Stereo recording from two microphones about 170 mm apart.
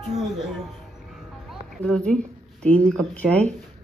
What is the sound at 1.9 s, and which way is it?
Speech, 5° left (ahead or behind).